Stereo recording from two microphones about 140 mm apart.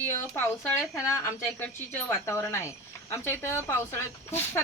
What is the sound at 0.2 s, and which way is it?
Speech, 15° left (ahead or behind).